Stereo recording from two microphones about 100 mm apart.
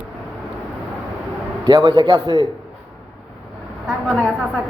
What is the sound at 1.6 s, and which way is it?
Speech, 45° right (ahead or behind).